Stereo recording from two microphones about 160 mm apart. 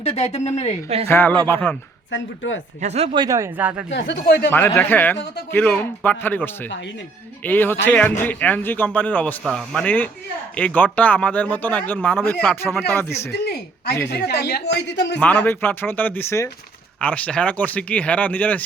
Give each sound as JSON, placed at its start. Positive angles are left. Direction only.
{"t": 0.0, "sound": "speech", "side_deg": 40}
{"t": 1.0, "sound": "a man's voice", "side_deg": 10}
{"t": 2.8, "sound": "speech", "side_deg": -45}
{"t": 3.2, "sound": "speech", "side_deg": -20}
{"t": 3.9, "sound": "speech", "side_deg": 90}
{"t": 4.5, "sound": "a man's voice", "side_deg": 15}
{"t": 13.4, "sound": "speech", "side_deg": 90}
{"t": 15.2, "sound": "a man's voice", "side_deg": 10}